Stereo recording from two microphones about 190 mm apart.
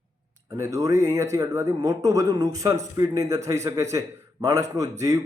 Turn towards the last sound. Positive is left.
turn(degrees=-15)  # may be behind; listen again after turning